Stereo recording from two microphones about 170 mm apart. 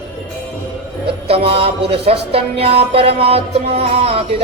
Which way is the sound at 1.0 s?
35° right (ahead or behind).